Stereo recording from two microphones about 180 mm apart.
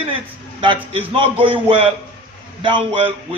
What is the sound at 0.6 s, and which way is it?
A man's voice, 30° right (ahead or behind).